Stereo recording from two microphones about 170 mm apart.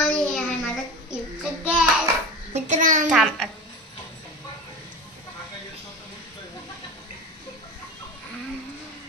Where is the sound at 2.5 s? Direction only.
45° right (ahead or behind).